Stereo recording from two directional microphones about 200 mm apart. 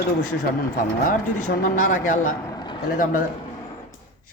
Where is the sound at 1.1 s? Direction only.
40° left (ahead or behind).